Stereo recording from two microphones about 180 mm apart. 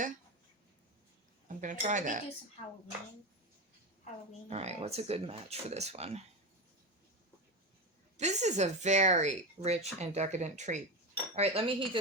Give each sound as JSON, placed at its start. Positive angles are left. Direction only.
{"t": 1.5, "sound": "speech", "side_deg": -45}
{"t": 4.4, "sound": "speech", "side_deg": -35}
{"t": 8.1, "sound": "speech", "side_deg": -40}